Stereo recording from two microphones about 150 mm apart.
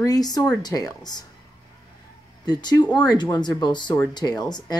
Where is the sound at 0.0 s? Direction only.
25° left (ahead or behind).